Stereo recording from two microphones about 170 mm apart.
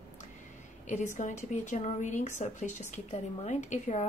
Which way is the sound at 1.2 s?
45° left (ahead or behind).